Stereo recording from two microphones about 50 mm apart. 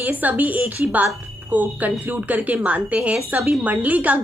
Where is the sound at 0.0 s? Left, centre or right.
Right.